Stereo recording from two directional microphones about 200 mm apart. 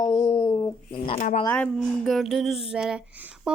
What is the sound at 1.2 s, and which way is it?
Speech, 35° left (ahead or behind).